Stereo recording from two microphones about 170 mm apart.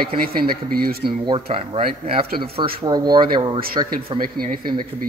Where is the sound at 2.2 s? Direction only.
65° right (ahead or behind).